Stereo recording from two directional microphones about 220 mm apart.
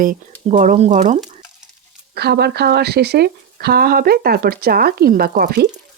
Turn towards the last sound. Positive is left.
turn(degrees=-45)  # may be behind; listen again after turning